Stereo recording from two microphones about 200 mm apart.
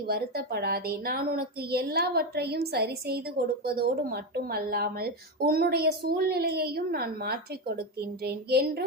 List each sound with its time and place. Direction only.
0.1 s a woman's voice: 50° right (ahead or behind)